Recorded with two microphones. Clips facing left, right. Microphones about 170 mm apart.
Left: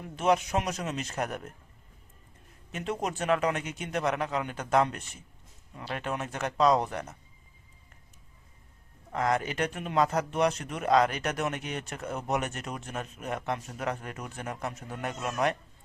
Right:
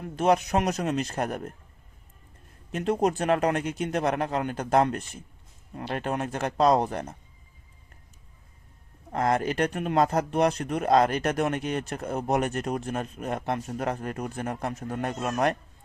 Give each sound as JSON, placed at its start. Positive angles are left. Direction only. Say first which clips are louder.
{"t": 0.2, "sound": "speech", "louder": "right 3 dB", "side_deg": -40}
{"t": 1.0, "sound": "speech", "louder": "right 4 dB", "side_deg": -35}
{"t": 2.7, "sound": "speech", "louder": "right 8 dB", "side_deg": -40}
{"t": 4.1, "sound": "speech", "louder": "right 4 dB", "side_deg": -45}
{"t": 9.1, "sound": "speech", "louder": "right 4 dB", "side_deg": -40}
{"t": 12.6, "sound": "speech", "louder": "right 7 dB", "side_deg": -45}